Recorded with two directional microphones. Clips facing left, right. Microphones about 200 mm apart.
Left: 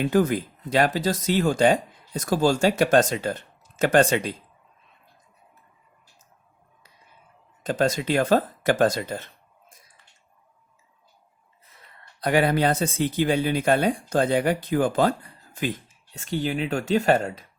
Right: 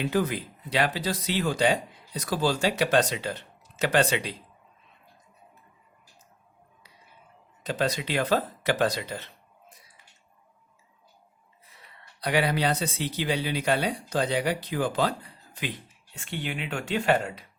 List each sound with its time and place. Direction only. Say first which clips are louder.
0.0 s speech: left 5 dB; 50° left (ahead or behind)
7.6 s speech: left 5 dB; 45° left (ahead or behind)
12.2 s speech: left 5 dB; 50° left (ahead or behind)